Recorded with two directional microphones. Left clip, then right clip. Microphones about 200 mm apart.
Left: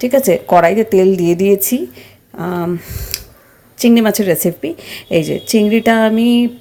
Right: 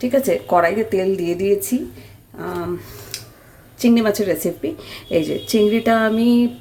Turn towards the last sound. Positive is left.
turn(degrees=20)  # may be behind; listen again after turning